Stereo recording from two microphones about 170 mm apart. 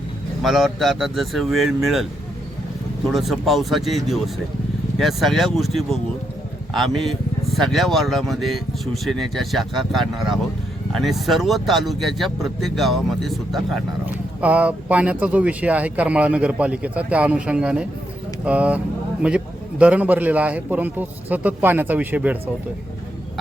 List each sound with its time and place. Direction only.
0.4 s speech: centre (ahead or behind)
3.1 s speech: centre (ahead or behind)